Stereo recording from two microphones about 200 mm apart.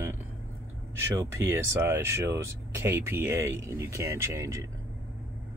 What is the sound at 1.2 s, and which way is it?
Speech, 10° right (ahead or behind).